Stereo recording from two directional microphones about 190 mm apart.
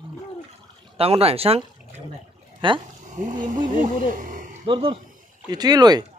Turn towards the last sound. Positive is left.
turn(degrees=-20)  # may be behind; listen again after turning